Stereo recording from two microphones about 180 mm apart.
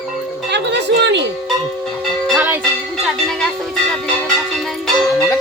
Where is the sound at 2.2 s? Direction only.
5° right (ahead or behind).